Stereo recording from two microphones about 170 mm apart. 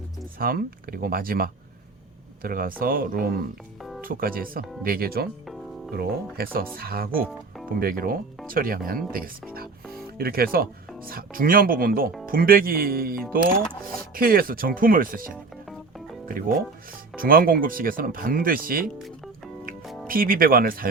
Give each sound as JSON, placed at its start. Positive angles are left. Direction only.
{"t": 0.3, "sound": "speech", "side_deg": -60}
{"t": 20.1, "sound": "speech", "side_deg": -55}